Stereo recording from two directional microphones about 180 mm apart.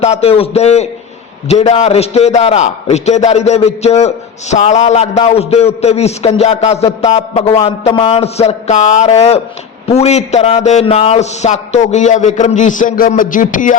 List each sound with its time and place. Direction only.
0.0 s a man's voice: 35° left (ahead or behind)